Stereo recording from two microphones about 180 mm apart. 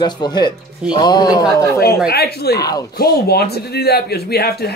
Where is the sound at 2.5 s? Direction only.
20° left (ahead or behind).